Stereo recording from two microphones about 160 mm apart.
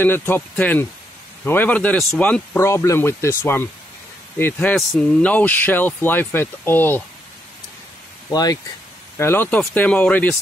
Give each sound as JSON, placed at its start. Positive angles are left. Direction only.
{"t": 0.0, "sound": "speech", "side_deg": 10}
{"t": 8.3, "sound": "speech", "side_deg": 25}
{"t": 9.2, "sound": "speech", "side_deg": 15}